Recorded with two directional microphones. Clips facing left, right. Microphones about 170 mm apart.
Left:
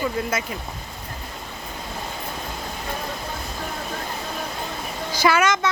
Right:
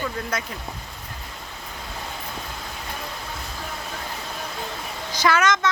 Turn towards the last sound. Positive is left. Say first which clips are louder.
# left 1 dB
turn(degrees=10)  # may be behind; listen again after turning